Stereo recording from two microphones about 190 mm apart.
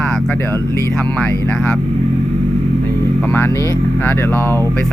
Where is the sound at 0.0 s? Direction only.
5° left (ahead or behind).